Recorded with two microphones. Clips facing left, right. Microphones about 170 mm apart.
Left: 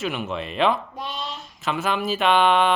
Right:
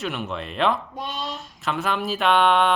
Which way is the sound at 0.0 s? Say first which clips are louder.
Left 2 dB; centre (ahead or behind).